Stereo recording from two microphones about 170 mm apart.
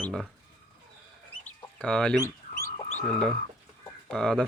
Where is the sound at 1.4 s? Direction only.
5° left (ahead or behind).